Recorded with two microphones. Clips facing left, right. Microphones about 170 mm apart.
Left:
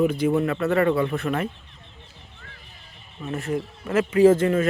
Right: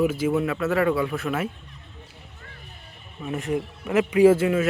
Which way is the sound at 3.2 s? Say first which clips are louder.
Right 1 dB; 20° right (ahead or behind).